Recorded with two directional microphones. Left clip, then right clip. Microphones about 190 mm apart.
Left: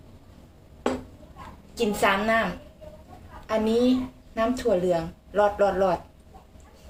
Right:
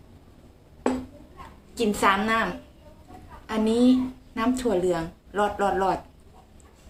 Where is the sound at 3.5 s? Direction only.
25° right (ahead or behind).